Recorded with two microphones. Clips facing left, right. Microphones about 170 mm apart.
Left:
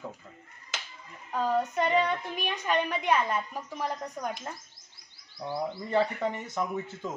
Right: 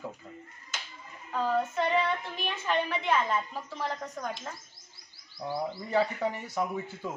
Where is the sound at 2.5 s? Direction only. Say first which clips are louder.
Left 1 dB; 15° left (ahead or behind).